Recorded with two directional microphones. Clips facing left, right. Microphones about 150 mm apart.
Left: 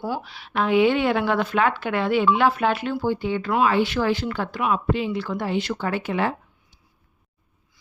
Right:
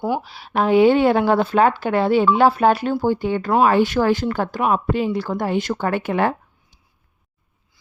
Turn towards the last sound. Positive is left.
turn(degrees=-55)  # may be behind; listen again after turning